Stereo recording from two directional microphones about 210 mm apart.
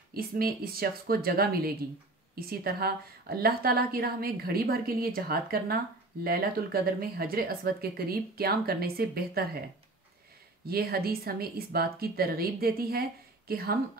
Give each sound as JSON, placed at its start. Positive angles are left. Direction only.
{"t": 0.1, "sound": "a woman's voice", "side_deg": -45}
{"t": 10.7, "sound": "a woman's voice", "side_deg": -45}